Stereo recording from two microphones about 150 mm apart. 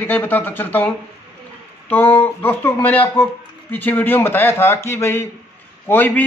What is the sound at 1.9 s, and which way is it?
A man's voice, 10° left (ahead or behind).